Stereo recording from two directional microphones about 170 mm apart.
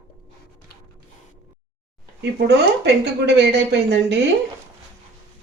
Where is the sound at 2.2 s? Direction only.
85° right.